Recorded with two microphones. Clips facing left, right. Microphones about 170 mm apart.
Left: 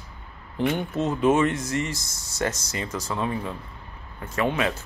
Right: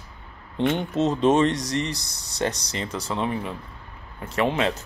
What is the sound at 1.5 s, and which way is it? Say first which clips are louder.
Speech: right 1 dB; 35° right (ahead or behind).